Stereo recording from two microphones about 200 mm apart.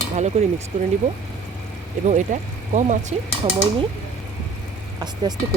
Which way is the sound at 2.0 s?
35° right (ahead or behind).